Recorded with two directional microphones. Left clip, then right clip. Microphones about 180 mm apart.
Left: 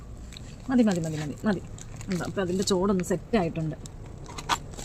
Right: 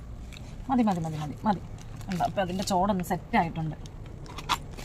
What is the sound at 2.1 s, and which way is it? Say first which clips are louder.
Speech: right 1 dB; 20° right (ahead or behind).